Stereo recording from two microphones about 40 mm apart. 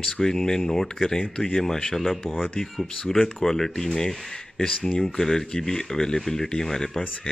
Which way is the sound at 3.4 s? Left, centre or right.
Centre.